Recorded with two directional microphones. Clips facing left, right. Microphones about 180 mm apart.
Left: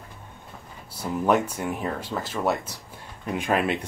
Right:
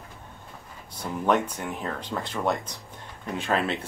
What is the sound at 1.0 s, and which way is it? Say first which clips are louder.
Speech: left 2 dB; 5° left (ahead or behind).